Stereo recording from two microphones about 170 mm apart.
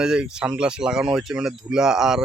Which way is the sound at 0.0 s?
5° right (ahead or behind).